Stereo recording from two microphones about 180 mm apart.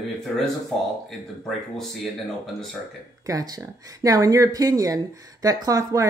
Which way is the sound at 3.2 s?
20° right (ahead or behind).